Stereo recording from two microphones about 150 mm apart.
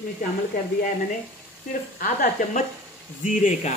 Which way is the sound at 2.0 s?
70° left (ahead or behind).